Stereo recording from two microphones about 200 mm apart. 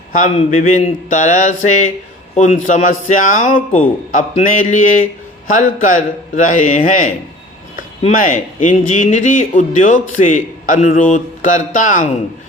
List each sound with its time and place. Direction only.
0.1 s speech: 40° left (ahead or behind)